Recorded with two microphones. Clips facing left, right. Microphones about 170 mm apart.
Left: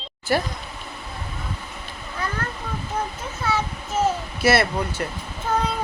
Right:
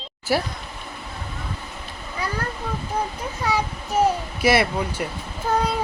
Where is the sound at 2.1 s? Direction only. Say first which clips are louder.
Right 1 dB; 10° right (ahead or behind).